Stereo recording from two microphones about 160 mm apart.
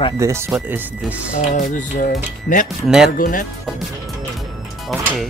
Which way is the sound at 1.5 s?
60° left (ahead or behind).